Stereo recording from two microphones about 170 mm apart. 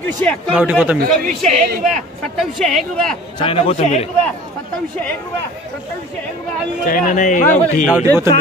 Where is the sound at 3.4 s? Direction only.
35° left (ahead or behind).